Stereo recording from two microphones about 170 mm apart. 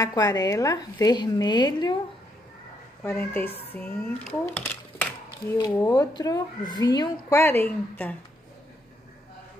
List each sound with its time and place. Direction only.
0.0 s a woman's voice: 20° left (ahead or behind)
3.0 s speech: 10° left (ahead or behind)
5.5 s a woman's voice: 20° left (ahead or behind)